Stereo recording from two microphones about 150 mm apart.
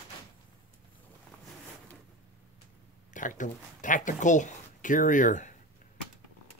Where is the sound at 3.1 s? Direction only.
55° left (ahead or behind).